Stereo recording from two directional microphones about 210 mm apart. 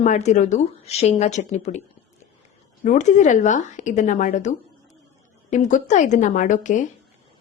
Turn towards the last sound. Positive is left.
turn(degrees=35)  # may be behind; listen again after turning